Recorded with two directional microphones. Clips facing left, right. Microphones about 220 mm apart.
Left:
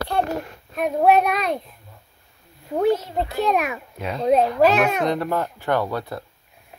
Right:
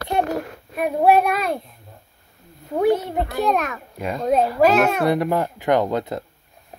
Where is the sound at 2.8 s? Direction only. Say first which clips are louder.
Right 2 dB; 55° right (ahead or behind).